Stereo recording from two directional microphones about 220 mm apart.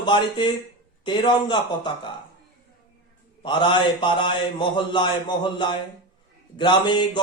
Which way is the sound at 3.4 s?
20° left (ahead or behind).